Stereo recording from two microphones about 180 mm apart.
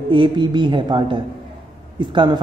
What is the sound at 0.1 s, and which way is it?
A woman's voice, 25° right (ahead or behind).